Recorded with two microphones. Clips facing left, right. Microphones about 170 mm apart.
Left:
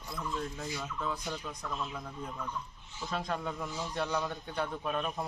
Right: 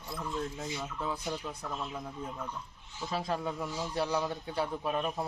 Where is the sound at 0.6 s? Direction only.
20° right (ahead or behind).